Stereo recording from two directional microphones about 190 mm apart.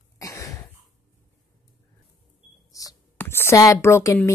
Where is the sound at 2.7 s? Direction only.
15° left (ahead or behind).